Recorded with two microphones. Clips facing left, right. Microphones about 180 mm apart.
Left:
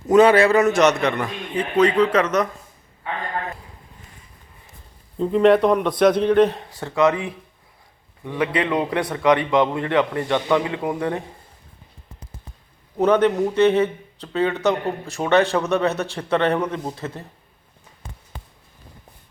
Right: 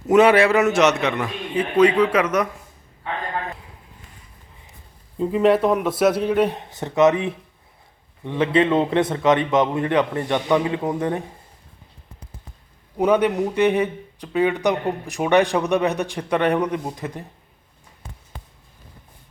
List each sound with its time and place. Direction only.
0.1 s speech: 10° right (ahead or behind)
5.1 s a man's voice: 5° right (ahead or behind)
6.6 s a man's voice: 20° right (ahead or behind)
13.0 s speech: 10° right (ahead or behind)